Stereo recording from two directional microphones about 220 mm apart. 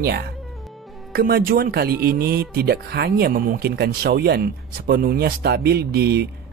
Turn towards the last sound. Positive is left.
turn(degrees=-45)  # may be behind; listen again after turning